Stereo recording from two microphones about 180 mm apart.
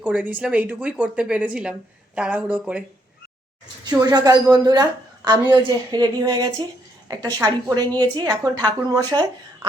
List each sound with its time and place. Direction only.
0.0 s a woman's voice: 10° right (ahead or behind)
3.8 s a woman's voice: 20° right (ahead or behind)